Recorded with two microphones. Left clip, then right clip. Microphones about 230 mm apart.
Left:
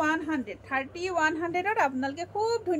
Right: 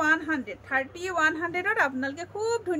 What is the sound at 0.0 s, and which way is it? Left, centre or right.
A woman's voice, centre.